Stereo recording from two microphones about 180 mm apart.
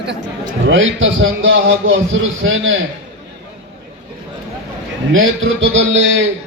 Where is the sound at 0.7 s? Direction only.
90° right.